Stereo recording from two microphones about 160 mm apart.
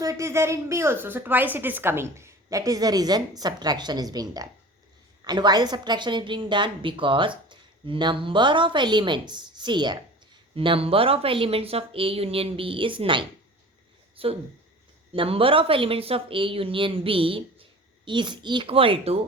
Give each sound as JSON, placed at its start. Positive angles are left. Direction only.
{"t": 0.0, "sound": "a woman's voice", "side_deg": -20}